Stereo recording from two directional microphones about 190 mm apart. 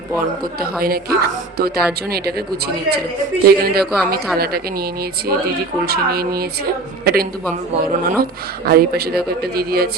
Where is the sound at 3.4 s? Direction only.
55° right (ahead or behind).